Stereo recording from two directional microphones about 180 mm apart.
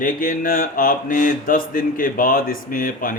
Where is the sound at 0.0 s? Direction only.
50° left (ahead or behind).